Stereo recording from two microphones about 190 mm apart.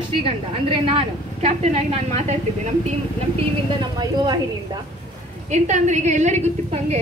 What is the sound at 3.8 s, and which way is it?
Speech, 20° right (ahead or behind).